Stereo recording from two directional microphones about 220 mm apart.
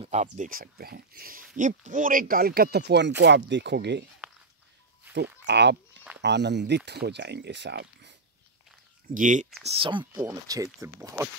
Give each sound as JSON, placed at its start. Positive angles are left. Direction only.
{"t": 0.0, "sound": "speech", "side_deg": -30}
{"t": 5.4, "sound": "goat", "side_deg": -50}
{"t": 6.2, "sound": "speech", "side_deg": -50}
{"t": 9.1, "sound": "speech", "side_deg": -35}
{"t": 9.7, "sound": "speech", "side_deg": -25}